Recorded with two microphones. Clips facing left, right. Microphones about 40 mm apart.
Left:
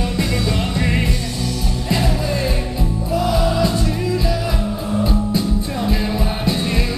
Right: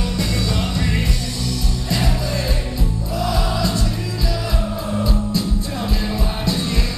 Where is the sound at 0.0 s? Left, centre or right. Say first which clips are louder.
Left 2 dB; centre.